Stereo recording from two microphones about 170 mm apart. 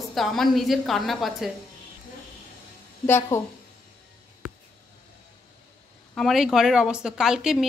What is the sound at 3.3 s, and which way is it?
Speech, 15° left (ahead or behind).